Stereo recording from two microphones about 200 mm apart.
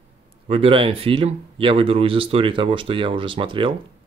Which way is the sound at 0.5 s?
25° right (ahead or behind).